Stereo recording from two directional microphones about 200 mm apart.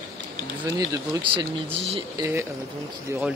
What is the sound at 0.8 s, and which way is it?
Speech, 20° right (ahead or behind).